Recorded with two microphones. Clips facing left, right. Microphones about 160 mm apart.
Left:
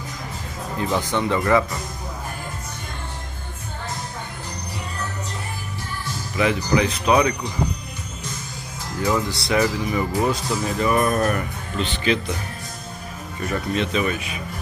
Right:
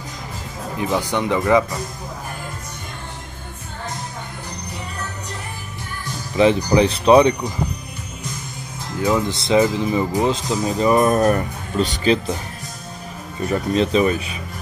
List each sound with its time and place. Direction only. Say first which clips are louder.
0.7 s speech: right 2 dB; 15° right (ahead or behind)
6.3 s speech: right 5 dB; 30° right (ahead or behind)
9.0 s speech: right 3 dB; 20° right (ahead or behind); by 12.4 s 35° right (ahead or behind)
13.5 s speech: right 5 dB; 35° right (ahead or behind)